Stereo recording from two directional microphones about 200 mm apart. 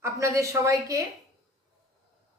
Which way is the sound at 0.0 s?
15° right (ahead or behind).